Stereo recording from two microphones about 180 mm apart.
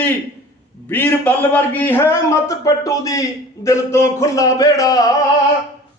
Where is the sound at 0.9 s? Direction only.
10° left (ahead or behind).